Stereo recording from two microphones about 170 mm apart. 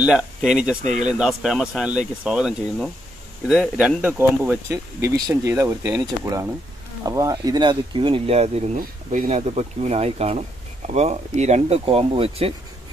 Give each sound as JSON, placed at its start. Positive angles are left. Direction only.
{"t": 0.0, "sound": "speech", "side_deg": -5}
{"t": 8.7, "sound": "speech", "side_deg": -50}